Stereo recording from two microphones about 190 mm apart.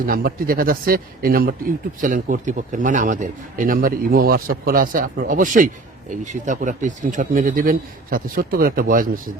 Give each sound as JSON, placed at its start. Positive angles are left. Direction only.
{"t": 0.0, "sound": "a man's voice", "side_deg": -50}